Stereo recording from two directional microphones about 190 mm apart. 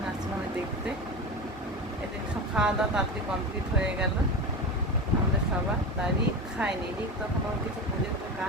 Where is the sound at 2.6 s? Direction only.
5° right (ahead or behind).